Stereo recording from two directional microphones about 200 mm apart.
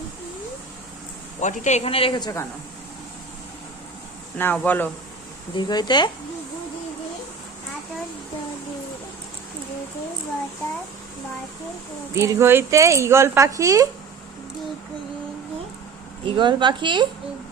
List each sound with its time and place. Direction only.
1.4 s speech: 35° left (ahead or behind); by 2.5 s 15° left (ahead or behind)
4.4 s speech: 10° left (ahead or behind)
5.5 s speech: 20° left (ahead or behind)
12.1 s a woman's voice: 15° right (ahead or behind)
16.2 s a woman's voice: 25° right (ahead or behind)